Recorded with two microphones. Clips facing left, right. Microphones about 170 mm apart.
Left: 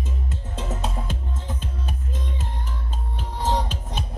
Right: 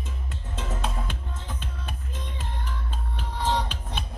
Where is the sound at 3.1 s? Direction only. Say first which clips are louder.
Left 2 dB; 40° left (ahead or behind).